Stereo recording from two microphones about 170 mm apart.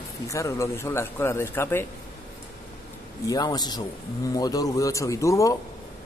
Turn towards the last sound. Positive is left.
turn(degrees=20)  # may be behind; listen again after turning